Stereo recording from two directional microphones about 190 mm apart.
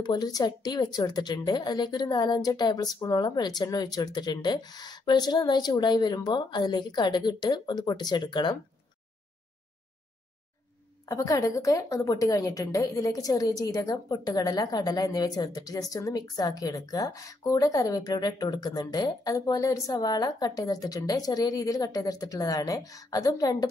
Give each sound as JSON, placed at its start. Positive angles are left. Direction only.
{"t": 0.0, "sound": "a woman's voice", "side_deg": 20}
{"t": 11.1, "sound": "a woman's voice", "side_deg": 15}